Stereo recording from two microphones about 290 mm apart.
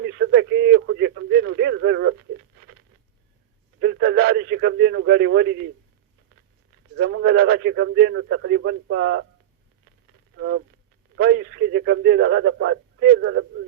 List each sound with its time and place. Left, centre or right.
0.0 s radio: right
3.8 s a sound: right
6.9 s a man's voice: right
10.3 s a man's voice: right